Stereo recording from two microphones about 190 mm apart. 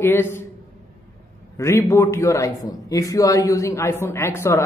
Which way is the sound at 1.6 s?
15° left (ahead or behind).